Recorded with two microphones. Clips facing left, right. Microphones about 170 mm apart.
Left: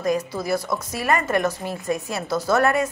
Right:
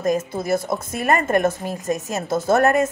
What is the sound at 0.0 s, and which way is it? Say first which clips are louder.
A woman's voice: right 2 dB; 45° right (ahead or behind).